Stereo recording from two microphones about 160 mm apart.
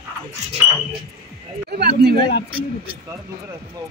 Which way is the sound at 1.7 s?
85° right.